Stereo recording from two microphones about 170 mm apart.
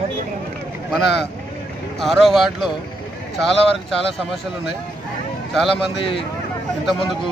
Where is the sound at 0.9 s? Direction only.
Centre (ahead or behind).